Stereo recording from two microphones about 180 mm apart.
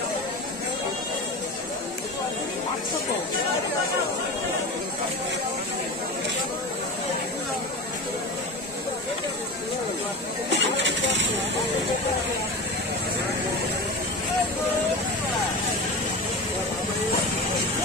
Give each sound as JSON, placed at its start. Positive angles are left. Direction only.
{"t": 10.5, "sound": "vehicle", "side_deg": -85}